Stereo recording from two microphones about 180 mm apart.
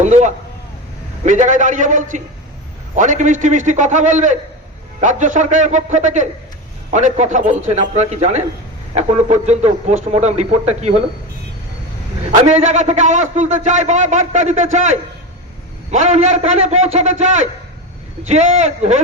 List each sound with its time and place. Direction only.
0.0 s a man's voice: 40° right (ahead or behind)
12.3 s a man's voice: 40° right (ahead or behind)